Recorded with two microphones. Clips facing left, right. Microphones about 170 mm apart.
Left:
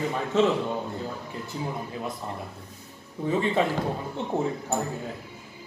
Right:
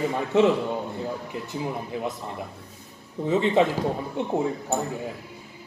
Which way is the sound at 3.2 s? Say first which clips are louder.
Right 3 dB; 20° right (ahead or behind).